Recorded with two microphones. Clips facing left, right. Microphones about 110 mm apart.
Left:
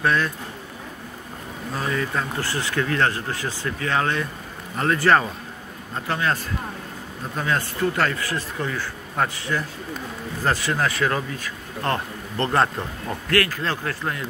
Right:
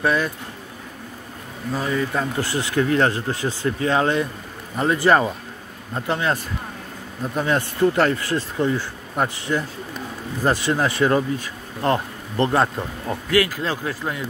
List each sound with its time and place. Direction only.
0.0 s speech: 10° right (ahead or behind)
1.9 s speech: 10° right (ahead or behind)
7.4 s speech: 20° right (ahead or behind)